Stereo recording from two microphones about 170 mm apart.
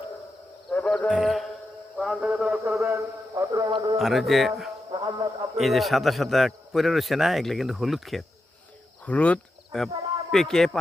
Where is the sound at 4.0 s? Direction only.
Centre (ahead or behind).